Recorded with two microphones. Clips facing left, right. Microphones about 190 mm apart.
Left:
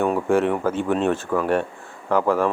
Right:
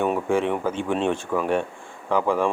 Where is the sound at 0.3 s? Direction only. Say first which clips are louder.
Left 3 dB; 10° left (ahead or behind).